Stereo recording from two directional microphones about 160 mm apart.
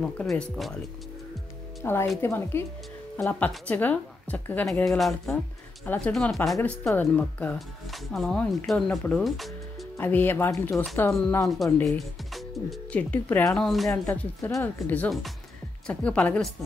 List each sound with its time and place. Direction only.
0.0 s speech: 5° left (ahead or behind)
1.8 s a woman's voice: 15° left (ahead or behind); by 9.8 s centre (ahead or behind)
9.9 s a woman's voice: 15° left (ahead or behind)
10.7 s speech: centre (ahead or behind)
14.0 s a woman's voice: 15° left (ahead or behind)